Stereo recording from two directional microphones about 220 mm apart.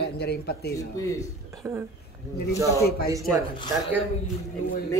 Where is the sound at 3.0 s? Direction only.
15° right (ahead or behind).